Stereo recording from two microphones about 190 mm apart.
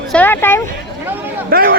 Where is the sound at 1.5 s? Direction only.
50° right (ahead or behind).